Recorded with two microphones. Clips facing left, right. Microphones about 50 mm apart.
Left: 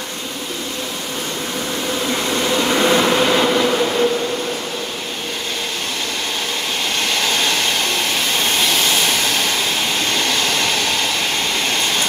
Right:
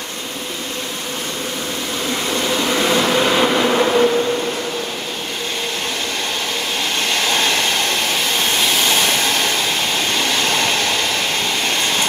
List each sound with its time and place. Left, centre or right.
2.2 s vehicle: centre
3.7 s train: centre